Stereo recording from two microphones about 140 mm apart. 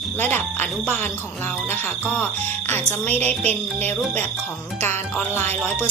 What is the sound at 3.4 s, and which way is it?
Music, 50° right (ahead or behind).